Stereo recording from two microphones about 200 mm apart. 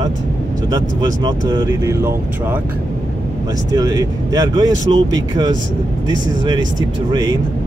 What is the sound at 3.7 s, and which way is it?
Speech, 20° right (ahead or behind).